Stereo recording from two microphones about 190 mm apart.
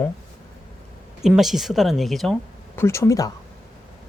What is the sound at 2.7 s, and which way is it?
Speech, 15° left (ahead or behind).